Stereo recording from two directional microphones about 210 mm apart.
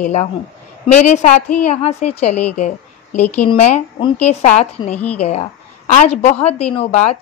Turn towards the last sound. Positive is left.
turn(degrees=30)  # may be behind; listen again after turning